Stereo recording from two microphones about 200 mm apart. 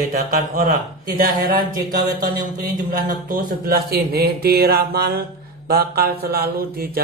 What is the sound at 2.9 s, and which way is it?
Speech, 45° right (ahead or behind).